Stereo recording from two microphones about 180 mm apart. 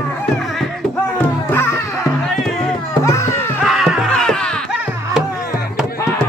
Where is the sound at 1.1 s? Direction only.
15° left (ahead or behind).